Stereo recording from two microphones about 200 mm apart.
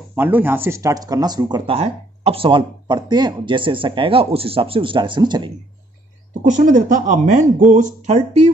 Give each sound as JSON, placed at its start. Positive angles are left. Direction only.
{"t": 0.1, "sound": "speech", "side_deg": -10}
{"t": 6.4, "sound": "speech", "side_deg": -35}